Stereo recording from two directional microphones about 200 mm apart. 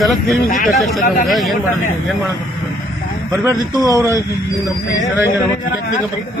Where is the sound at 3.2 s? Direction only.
15° right (ahead or behind).